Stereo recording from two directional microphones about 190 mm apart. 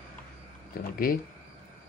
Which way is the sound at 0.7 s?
50° left (ahead or behind).